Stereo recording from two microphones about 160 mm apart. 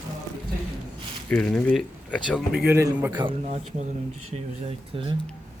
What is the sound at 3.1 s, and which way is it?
Speech, 30° right (ahead or behind).